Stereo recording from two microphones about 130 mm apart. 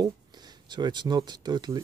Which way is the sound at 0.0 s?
30° right (ahead or behind).